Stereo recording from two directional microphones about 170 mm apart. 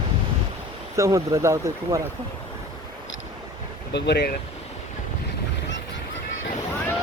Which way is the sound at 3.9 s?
80° left.